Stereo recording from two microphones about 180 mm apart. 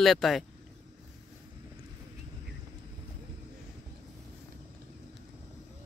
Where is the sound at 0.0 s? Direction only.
Centre (ahead or behind).